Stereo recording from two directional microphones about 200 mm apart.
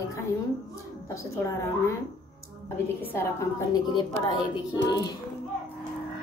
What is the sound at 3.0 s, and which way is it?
A woman's voice, 15° left (ahead or behind).